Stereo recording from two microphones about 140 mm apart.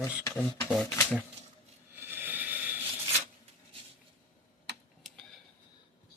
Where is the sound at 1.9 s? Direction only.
15° right (ahead or behind).